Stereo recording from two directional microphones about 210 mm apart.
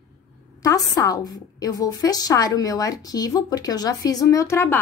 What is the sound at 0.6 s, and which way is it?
A woman's voice, 15° left (ahead or behind).